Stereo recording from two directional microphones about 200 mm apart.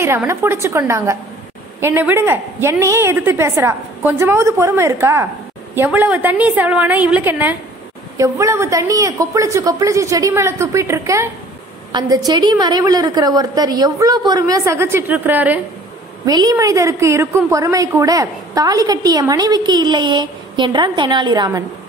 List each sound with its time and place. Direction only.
0.0 s a woman's voice: 15° right (ahead or behind)